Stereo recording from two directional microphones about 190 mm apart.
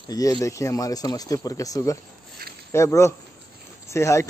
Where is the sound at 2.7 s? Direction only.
15° left (ahead or behind).